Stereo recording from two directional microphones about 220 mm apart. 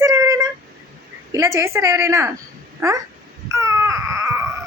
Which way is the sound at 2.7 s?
15° right (ahead or behind).